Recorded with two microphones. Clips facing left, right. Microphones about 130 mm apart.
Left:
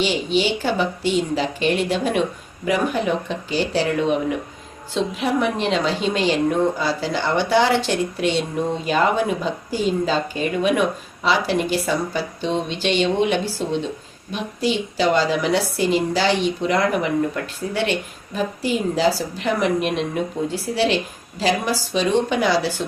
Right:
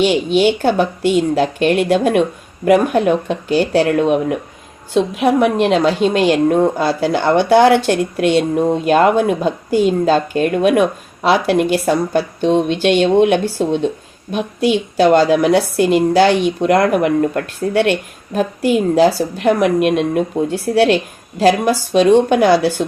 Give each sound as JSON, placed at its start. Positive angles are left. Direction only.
{"t": 0.0, "sound": "a woman's voice", "side_deg": -55}